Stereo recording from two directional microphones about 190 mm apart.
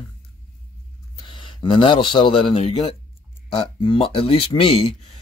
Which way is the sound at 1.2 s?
25° left (ahead or behind).